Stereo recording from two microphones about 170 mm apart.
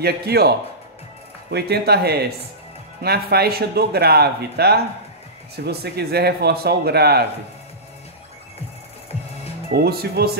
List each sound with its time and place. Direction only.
0.0 s speech: 70° right (ahead or behind)
9.8 s speech: 65° right (ahead or behind)